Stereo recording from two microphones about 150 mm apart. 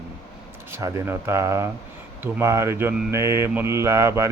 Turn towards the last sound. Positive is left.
turn(degrees=-20)  # may be behind; listen again after turning